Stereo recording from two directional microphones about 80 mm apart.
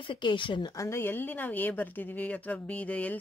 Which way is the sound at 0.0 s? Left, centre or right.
Left.